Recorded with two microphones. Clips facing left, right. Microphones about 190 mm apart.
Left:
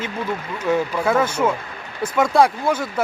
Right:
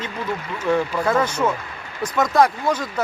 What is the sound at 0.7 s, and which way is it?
Speech, 10° left (ahead or behind).